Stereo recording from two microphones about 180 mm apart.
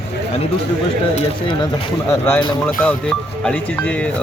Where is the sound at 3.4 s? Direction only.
10° left (ahead or behind).